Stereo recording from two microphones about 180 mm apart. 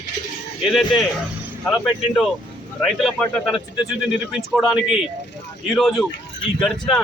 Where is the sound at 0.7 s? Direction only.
Centre (ahead or behind).